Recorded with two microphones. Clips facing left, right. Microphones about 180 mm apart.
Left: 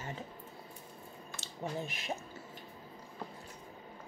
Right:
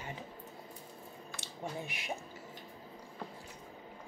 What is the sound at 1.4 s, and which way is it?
Speech, 15° right (ahead or behind).